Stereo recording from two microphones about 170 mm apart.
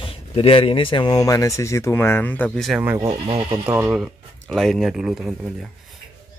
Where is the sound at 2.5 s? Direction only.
Centre (ahead or behind).